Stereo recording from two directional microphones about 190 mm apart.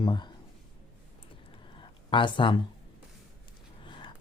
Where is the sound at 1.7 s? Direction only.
25° left (ahead or behind).